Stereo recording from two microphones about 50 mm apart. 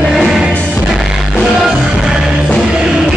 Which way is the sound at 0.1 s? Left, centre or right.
Centre.